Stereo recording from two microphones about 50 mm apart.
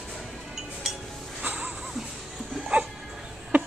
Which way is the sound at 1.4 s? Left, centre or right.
Right.